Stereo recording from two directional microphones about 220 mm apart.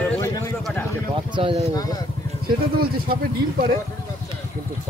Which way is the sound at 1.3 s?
25° right (ahead or behind).